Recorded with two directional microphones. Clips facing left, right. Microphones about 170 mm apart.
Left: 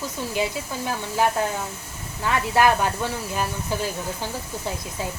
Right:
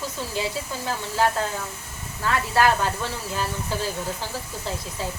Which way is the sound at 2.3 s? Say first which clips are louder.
Left 1 dB; 15° left (ahead or behind).